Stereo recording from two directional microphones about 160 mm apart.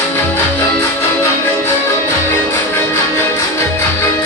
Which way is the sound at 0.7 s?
15° left (ahead or behind).